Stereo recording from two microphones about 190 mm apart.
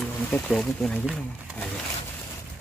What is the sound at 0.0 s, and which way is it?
Speech, 5° left (ahead or behind).